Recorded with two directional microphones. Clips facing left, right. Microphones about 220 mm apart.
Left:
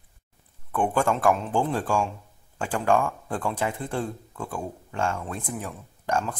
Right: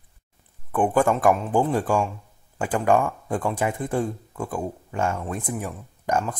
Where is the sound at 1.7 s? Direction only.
15° right (ahead or behind).